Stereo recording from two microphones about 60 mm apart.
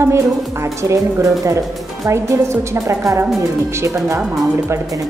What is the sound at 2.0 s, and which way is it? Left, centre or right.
A woman's voice, right.